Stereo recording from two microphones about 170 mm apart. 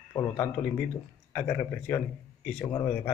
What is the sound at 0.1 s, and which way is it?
Speech, 20° left (ahead or behind).